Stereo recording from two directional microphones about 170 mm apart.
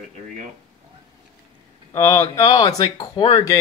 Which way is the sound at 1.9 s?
15° left (ahead or behind).